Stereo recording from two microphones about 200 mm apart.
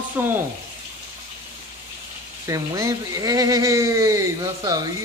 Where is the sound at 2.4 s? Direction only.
15° right (ahead or behind).